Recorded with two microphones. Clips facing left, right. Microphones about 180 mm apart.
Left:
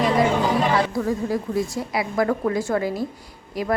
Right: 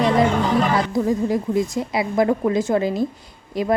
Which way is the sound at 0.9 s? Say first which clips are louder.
Right 4 dB; 20° right (ahead or behind).